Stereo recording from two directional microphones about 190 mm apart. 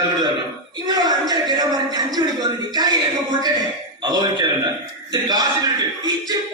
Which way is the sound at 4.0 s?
20° right (ahead or behind).